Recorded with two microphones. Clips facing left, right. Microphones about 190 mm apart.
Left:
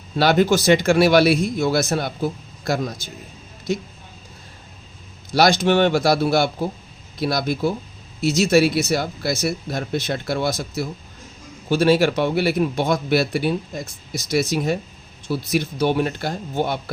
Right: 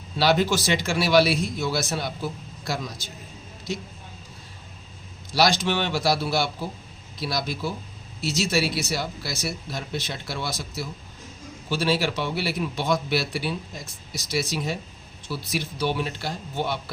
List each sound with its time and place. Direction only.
0.2 s speech: 50° left (ahead or behind)
5.3 s speech: 50° left (ahead or behind)